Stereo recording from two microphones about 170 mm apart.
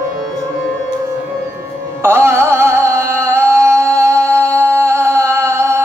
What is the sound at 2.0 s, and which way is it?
Music, 15° right (ahead or behind).